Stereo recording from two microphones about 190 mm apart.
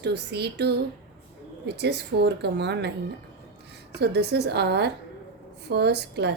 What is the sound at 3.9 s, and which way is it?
A woman's voice, 60° right (ahead or behind).